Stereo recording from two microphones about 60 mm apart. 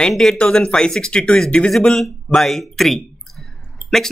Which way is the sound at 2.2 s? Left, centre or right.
Centre.